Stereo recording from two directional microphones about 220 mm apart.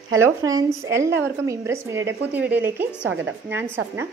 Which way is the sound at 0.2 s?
15° right (ahead or behind).